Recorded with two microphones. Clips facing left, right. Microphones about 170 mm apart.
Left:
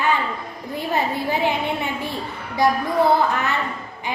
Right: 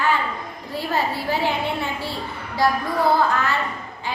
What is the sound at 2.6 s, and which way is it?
Speech, 20° left (ahead or behind).